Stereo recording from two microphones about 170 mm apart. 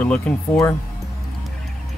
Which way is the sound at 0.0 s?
5° left (ahead or behind).